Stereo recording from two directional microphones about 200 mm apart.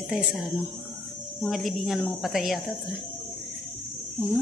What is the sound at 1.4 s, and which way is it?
A woman's voice, centre (ahead or behind).